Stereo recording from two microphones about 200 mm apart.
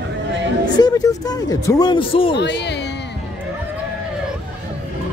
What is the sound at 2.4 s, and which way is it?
Speech, 60° left (ahead or behind).